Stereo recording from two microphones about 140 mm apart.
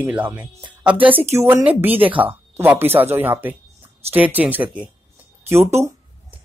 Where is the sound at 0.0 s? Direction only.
10° right (ahead or behind).